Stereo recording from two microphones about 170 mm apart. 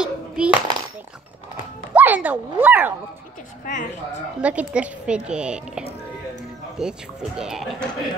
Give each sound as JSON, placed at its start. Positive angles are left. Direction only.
{"t": 0.0, "sound": "a sound", "side_deg": -5}
{"t": 2.0, "sound": "speech", "side_deg": -10}
{"t": 3.6, "sound": "a woman's voice", "side_deg": 50}
{"t": 4.4, "sound": "a woman's voice", "side_deg": -5}